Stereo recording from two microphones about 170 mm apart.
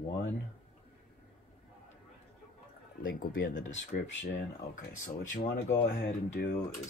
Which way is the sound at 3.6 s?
90° left.